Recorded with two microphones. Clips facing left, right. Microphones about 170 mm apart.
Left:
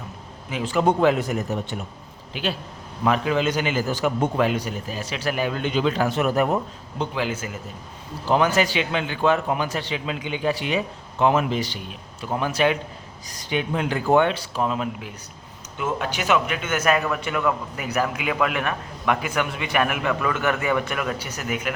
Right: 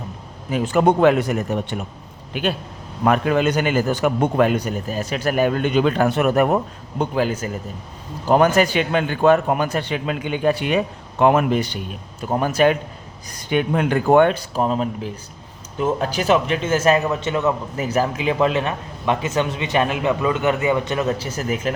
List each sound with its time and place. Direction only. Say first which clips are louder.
0.5 s a man's voice: right 4 dB; 50° right (ahead or behind)
7.0 s a man's voice: right 5 dB; 45° right (ahead or behind)
8.3 s a man's voice: right 5 dB; 50° right (ahead or behind); by 21.7 s 30° right (ahead or behind)